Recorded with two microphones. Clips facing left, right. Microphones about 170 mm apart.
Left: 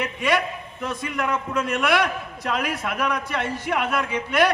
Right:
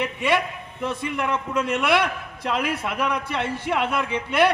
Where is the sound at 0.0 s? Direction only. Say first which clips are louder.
Even; 25° right (ahead or behind).